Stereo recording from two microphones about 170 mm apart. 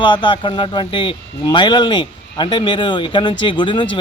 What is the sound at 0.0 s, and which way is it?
Speech, 30° left (ahead or behind).